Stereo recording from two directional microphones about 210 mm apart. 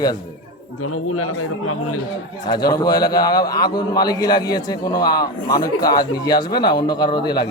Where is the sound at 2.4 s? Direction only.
20° left (ahead or behind).